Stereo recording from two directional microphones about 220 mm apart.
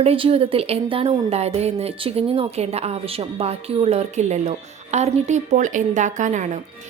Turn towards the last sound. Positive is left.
turn(degrees=-35)  # may be behind; listen again after turning